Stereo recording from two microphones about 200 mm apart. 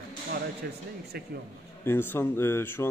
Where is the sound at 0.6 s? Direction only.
50° right (ahead or behind).